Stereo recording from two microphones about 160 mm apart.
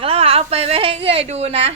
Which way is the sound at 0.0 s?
35° right (ahead or behind).